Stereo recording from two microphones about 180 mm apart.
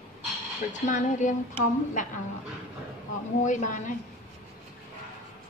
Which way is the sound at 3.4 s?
45° left (ahead or behind).